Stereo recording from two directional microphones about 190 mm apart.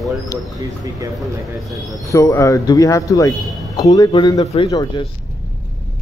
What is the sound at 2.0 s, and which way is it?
Speech, 15° left (ahead or behind).